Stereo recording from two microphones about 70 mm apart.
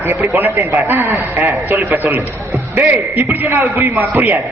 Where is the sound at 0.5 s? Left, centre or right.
Right.